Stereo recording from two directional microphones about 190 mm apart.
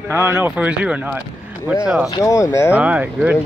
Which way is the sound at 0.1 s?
10° right (ahead or behind).